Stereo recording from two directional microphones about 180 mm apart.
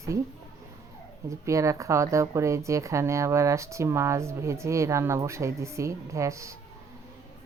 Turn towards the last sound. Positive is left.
turn(degrees=-15)  # may be behind; listen again after turning